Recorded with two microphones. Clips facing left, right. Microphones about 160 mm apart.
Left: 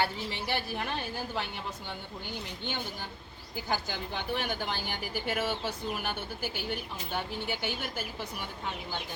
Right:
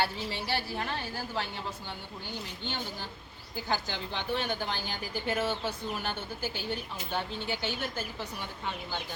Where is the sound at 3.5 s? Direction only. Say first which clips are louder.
Even; 10° left (ahead or behind).